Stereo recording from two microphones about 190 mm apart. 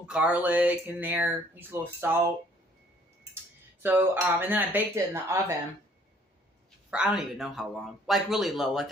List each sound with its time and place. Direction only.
0.1 s speech: 5° right (ahead or behind)
3.8 s speech: 10° right (ahead or behind)
7.2 s speech: centre (ahead or behind)